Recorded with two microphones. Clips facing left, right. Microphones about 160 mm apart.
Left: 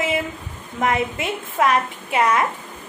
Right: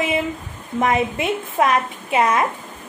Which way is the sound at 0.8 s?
20° right (ahead or behind).